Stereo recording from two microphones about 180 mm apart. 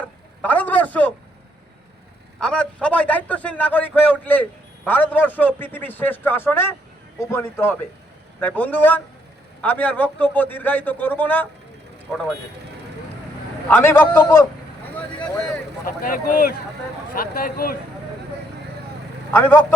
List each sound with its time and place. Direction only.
0.4 s a sound: 10° left (ahead or behind)
2.4 s a man's voice: 5° left (ahead or behind)
13.7 s a man's voice: 10° left (ahead or behind)
15.9 s speech: 50° left (ahead or behind)
19.3 s speech: 10° left (ahead or behind)